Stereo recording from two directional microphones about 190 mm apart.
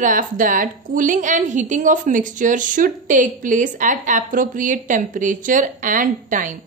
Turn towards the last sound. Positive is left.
turn(degrees=-45)  # may be behind; listen again after turning